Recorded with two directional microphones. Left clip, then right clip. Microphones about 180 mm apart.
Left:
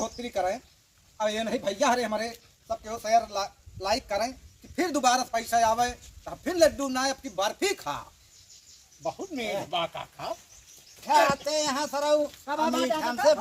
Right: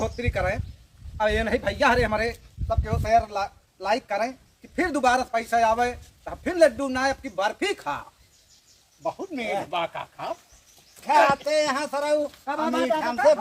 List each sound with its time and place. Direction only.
0.0 s a man's voice: centre (ahead or behind)
9.0 s speech: centre (ahead or behind)
11.3 s a man's voice: 10° right (ahead or behind)
12.6 s a man's voice: 20° left (ahead or behind)